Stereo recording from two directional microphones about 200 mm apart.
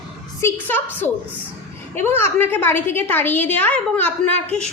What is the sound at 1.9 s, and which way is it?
A woman's voice, 10° left (ahead or behind).